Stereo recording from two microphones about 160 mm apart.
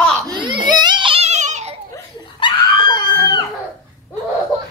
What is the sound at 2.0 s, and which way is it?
Screaming, 25° left (ahead or behind).